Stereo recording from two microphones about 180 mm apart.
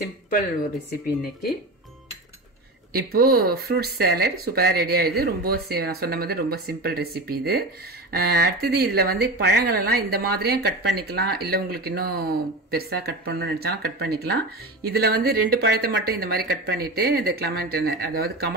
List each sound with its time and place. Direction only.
2.9 s speech: 60° right (ahead or behind)